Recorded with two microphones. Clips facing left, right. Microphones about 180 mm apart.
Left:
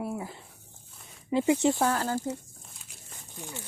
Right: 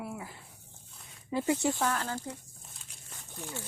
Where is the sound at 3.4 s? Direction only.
15° left (ahead or behind).